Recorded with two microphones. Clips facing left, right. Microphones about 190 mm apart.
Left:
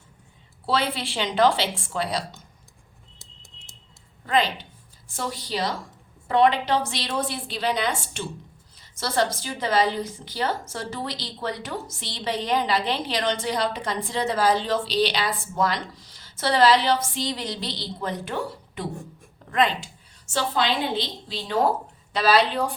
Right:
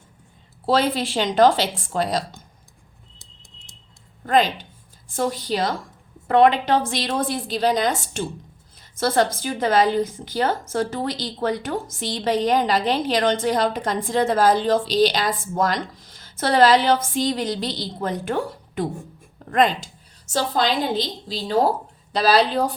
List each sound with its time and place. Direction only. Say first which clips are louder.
0.6 s a woman's voice: right 5 dB; 45° right (ahead or behind)
4.3 s a woman's voice: right 4 dB; 45° right (ahead or behind)